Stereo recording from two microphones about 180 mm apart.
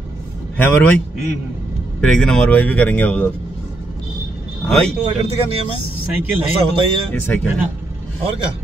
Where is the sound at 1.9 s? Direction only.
5° left (ahead or behind).